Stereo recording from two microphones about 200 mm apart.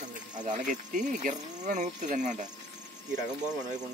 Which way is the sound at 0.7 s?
40° right (ahead or behind).